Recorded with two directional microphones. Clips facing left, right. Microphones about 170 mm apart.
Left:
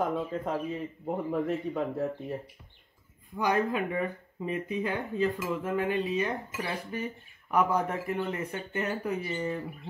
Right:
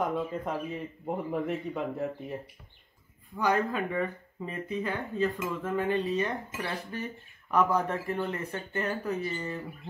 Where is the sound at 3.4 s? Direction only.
15° left (ahead or behind).